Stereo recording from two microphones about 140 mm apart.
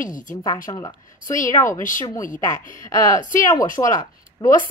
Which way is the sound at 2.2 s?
70° left (ahead or behind).